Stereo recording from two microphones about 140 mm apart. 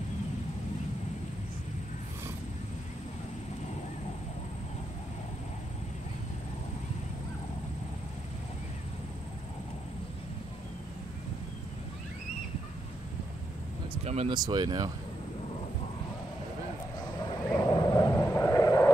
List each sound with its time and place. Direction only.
14.0 s speech: 50° right (ahead or behind)
14.3 s speech: 30° right (ahead or behind)
17.6 s vehicle: 25° left (ahead or behind)